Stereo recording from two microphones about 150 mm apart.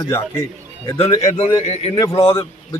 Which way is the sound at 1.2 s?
50° left (ahead or behind).